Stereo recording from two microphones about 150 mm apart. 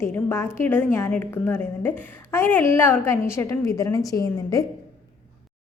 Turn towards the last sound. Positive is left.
turn(degrees=25)  # may be behind; listen again after turning